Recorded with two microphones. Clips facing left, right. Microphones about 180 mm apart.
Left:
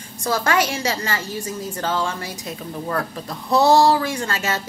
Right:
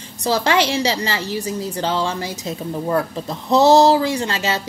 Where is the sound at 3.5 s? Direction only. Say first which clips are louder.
Right 3 dB; 20° right (ahead or behind).